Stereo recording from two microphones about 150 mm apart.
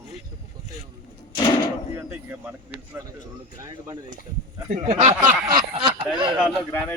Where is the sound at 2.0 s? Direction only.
15° right (ahead or behind).